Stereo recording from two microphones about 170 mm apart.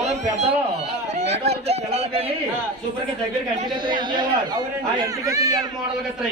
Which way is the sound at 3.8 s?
25° right (ahead or behind).